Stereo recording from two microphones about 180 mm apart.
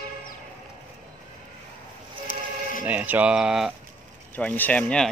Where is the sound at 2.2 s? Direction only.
50° left (ahead or behind).